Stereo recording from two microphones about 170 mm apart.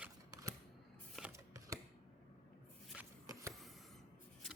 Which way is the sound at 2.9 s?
5° right (ahead or behind).